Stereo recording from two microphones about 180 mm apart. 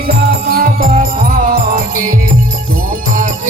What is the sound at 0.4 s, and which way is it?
Music, 55° right (ahead or behind).